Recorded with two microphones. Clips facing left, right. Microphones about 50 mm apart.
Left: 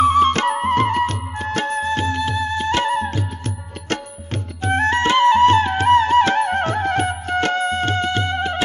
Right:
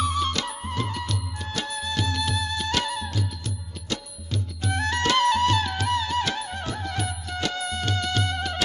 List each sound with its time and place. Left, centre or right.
0.0 s music: left